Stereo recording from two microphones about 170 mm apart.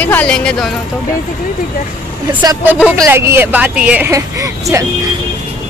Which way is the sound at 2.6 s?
5° right (ahead or behind).